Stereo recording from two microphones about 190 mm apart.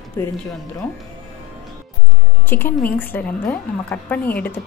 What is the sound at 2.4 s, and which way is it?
A woman's voice, 10° left (ahead or behind).